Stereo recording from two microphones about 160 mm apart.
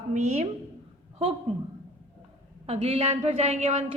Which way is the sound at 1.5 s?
40° right (ahead or behind).